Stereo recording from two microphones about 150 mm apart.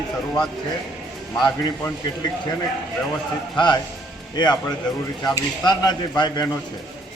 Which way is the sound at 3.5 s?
30° left (ahead or behind).